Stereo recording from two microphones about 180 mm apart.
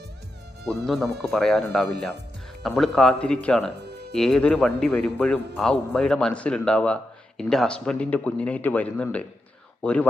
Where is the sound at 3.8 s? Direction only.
70° right (ahead or behind).